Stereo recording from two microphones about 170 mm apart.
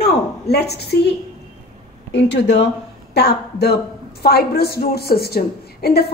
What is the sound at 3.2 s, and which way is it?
A woman's voice, 70° left (ahead or behind).